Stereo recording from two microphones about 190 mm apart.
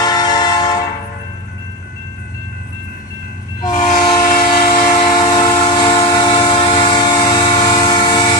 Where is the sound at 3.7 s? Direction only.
40° left (ahead or behind).